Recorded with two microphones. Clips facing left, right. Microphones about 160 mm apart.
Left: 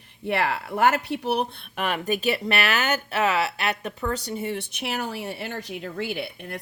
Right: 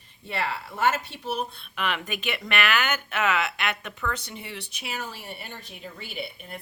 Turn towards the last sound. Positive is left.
turn(degrees=80)